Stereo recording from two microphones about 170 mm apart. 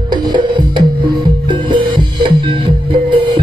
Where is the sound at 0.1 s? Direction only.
25° right (ahead or behind).